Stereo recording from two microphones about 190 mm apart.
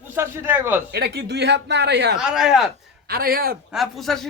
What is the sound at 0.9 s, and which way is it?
Speech, 60° right (ahead or behind).